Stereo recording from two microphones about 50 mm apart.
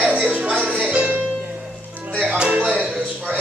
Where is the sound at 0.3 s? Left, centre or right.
Right.